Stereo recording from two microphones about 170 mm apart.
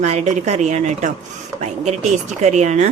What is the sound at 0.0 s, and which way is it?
A woman's voice, 40° right (ahead or behind).